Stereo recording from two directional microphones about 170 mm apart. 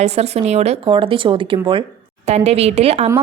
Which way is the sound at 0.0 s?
40° right (ahead or behind).